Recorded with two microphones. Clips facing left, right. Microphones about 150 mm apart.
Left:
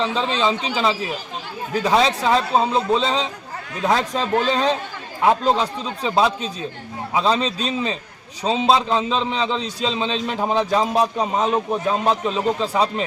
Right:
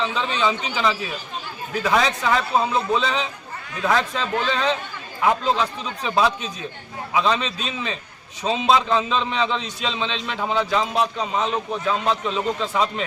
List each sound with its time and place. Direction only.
0.0 s a man's voice: 30° left (ahead or behind)